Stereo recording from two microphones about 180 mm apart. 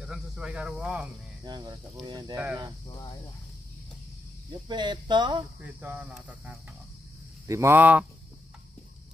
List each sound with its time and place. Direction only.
0.0 s speech: 5° right (ahead or behind)
1.4 s speech: 25° right (ahead or behind)
4.6 s speech: 25° right (ahead or behind)
5.6 s speech: 10° right (ahead or behind)